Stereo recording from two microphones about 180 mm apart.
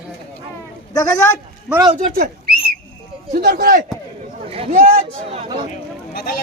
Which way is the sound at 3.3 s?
55° right (ahead or behind).